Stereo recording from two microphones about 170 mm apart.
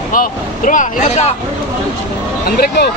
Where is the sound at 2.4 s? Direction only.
65° left (ahead or behind).